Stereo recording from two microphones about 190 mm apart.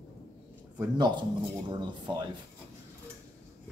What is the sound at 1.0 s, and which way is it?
Speech, 25° right (ahead or behind).